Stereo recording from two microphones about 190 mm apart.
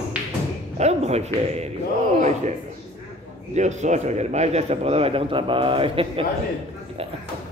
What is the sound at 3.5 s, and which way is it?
A man's voice, 40° right (ahead or behind).